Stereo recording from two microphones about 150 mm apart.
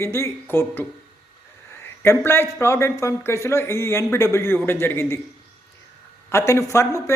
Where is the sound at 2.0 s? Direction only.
15° left (ahead or behind).